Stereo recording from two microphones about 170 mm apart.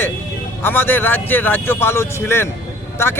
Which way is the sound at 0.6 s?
10° left (ahead or behind).